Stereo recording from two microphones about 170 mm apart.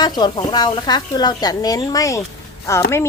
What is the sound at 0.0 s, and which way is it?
Speech, 25° left (ahead or behind).